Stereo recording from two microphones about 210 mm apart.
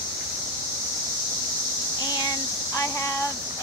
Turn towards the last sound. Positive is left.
turn(degrees=15)  # may be behind; listen again after turning